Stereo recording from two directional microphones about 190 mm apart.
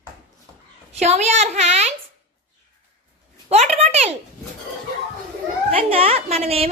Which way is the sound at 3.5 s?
35° right (ahead or behind).